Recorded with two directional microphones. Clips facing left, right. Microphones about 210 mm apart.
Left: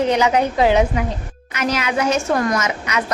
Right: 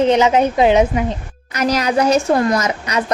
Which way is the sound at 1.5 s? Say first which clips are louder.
Right 4 dB; 40° right (ahead or behind).